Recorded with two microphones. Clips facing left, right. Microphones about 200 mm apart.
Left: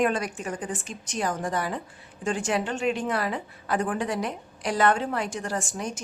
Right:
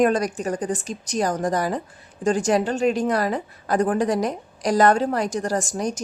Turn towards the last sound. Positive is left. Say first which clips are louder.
# right 6 dB
turn(degrees=-40)  # may be behind; listen again after turning